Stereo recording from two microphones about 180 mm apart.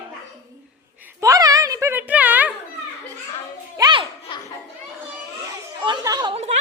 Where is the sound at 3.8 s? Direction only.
25° right (ahead or behind).